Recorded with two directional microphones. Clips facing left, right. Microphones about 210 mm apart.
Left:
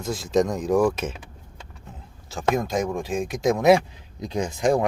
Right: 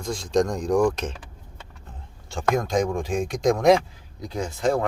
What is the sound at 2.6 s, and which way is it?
Speech, 5° left (ahead or behind).